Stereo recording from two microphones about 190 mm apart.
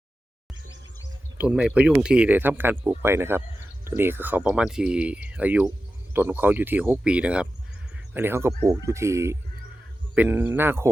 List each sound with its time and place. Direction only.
1.4 s speech: 5° right (ahead or behind)